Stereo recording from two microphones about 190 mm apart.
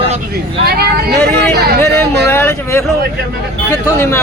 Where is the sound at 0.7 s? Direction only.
55° right (ahead or behind).